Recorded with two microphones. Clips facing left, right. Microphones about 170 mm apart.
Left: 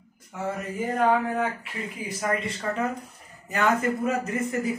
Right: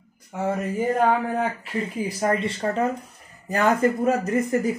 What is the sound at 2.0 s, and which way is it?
Speech, 35° right (ahead or behind).